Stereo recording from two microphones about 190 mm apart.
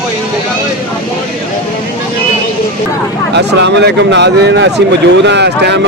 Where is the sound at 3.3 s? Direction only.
65° right (ahead or behind).